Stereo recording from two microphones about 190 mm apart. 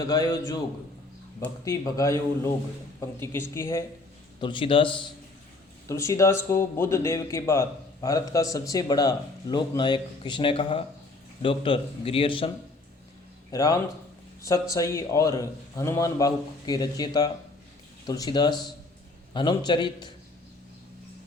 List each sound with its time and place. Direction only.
0.0 s a man's voice: 20° left (ahead or behind)
1.6 s speech: 20° left (ahead or behind)
3.2 s speech: 10° left (ahead or behind)
4.4 s a man's voice: 25° left (ahead or behind)
5.9 s a man's voice: 15° left (ahead or behind)
13.5 s a man's voice: 20° left (ahead or behind)